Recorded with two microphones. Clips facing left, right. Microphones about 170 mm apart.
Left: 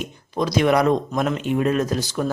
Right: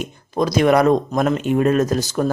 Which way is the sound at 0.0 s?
45° right (ahead or behind).